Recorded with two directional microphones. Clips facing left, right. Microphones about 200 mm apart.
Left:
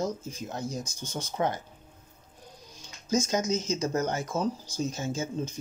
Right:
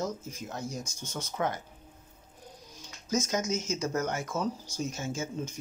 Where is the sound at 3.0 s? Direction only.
30° left (ahead or behind).